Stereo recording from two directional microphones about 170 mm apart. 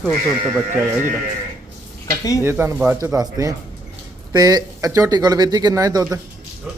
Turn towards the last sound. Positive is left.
turn(degrees=-20)  # may be behind; listen again after turning